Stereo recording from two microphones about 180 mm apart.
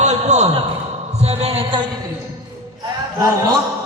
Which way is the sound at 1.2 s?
35° right (ahead or behind).